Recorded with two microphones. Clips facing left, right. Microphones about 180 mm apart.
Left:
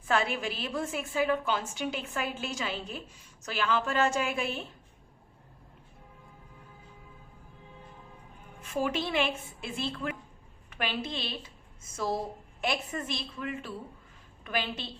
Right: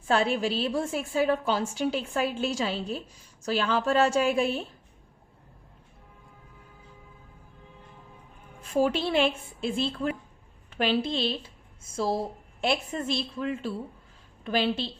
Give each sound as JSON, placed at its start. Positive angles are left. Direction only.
{"t": 0.1, "sound": "a woman's voice", "side_deg": -30}
{"t": 8.6, "sound": "a woman's voice", "side_deg": -30}